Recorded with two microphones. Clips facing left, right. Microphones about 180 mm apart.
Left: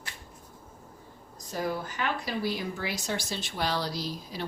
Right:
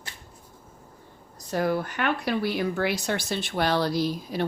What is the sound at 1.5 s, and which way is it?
Speech, 65° right (ahead or behind).